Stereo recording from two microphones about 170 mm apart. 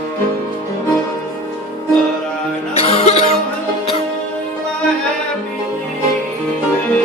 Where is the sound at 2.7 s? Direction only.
35° left (ahead or behind).